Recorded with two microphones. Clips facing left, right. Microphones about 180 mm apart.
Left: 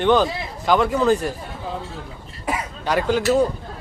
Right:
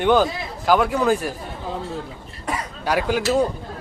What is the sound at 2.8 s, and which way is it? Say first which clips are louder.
Speech: left 2 dB; 10° right (ahead or behind).